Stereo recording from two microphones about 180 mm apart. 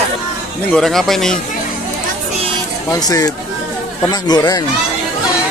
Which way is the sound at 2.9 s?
20° left (ahead or behind).